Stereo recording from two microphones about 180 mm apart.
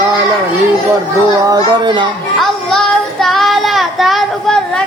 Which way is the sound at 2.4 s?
Centre (ahead or behind).